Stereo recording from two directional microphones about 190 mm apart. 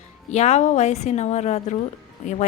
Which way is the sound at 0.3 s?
35° left (ahead or behind).